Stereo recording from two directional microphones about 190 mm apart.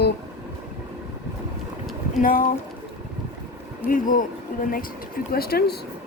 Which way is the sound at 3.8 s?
45° left (ahead or behind).